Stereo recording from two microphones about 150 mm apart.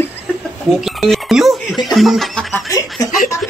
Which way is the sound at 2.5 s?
25° left (ahead or behind).